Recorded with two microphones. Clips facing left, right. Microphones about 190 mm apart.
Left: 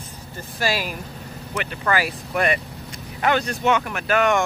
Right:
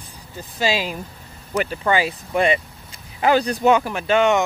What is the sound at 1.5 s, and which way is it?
Speech, 40° right (ahead or behind).